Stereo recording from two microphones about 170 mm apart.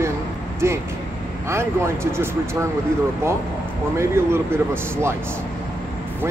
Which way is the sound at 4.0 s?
15° right (ahead or behind).